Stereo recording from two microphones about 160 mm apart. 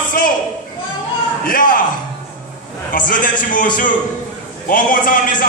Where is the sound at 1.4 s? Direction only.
60° left (ahead or behind).